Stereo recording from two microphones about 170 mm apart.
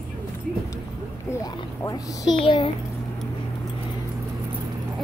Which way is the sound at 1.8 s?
20° left (ahead or behind).